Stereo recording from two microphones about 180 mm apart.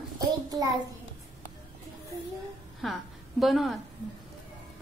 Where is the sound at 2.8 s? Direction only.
Centre (ahead or behind).